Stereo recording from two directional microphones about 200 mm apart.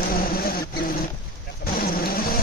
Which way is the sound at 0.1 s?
45° left (ahead or behind).